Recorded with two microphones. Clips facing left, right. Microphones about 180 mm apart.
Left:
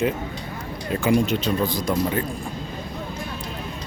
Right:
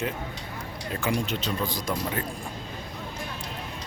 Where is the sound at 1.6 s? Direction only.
Centre (ahead or behind).